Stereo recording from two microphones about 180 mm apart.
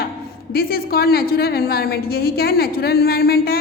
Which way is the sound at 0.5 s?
55° left (ahead or behind).